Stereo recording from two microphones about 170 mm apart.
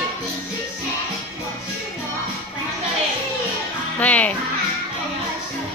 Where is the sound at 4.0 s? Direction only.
10° left (ahead or behind).